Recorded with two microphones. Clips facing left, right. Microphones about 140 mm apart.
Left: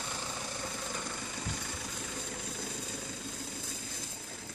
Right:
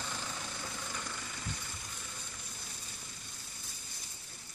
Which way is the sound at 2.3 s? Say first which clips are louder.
Left 10 dB; 90° left.